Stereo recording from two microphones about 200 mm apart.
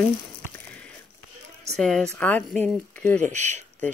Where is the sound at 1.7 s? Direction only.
5° left (ahead or behind).